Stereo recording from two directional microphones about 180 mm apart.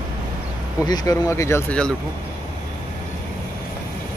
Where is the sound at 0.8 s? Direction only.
20° left (ahead or behind).